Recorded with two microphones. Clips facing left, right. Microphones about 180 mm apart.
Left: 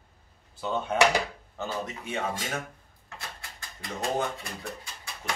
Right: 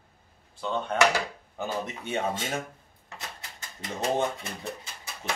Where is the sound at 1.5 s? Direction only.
25° right (ahead or behind).